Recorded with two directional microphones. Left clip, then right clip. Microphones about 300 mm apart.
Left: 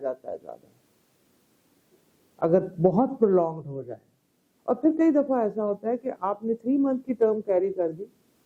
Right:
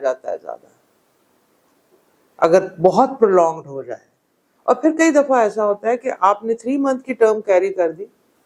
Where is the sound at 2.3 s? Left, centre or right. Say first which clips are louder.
Right 9 dB; centre.